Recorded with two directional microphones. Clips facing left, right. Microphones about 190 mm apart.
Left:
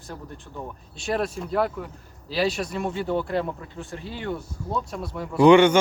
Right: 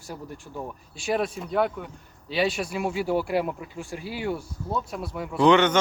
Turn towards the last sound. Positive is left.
turn(degrees=10)  # may be behind; listen again after turning